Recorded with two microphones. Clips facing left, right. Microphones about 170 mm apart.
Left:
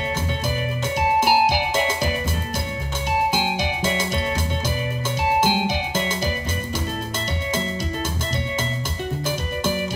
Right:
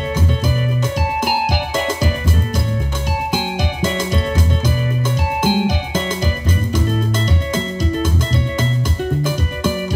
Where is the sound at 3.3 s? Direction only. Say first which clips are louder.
Right 2 dB; 50° right (ahead or behind).